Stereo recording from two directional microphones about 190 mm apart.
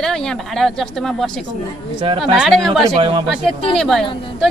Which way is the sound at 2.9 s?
25° right (ahead or behind).